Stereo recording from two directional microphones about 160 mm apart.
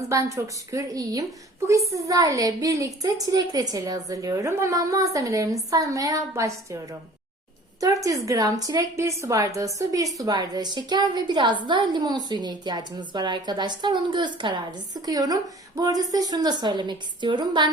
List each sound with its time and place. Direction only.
0.1 s a woman's voice: 20° right (ahead or behind)